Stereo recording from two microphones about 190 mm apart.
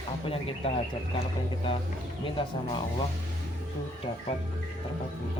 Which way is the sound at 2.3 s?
25° left (ahead or behind).